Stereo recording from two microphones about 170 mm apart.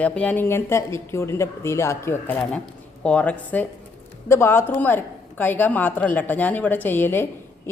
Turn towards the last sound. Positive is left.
turn(degrees=15)  # may be behind; listen again after turning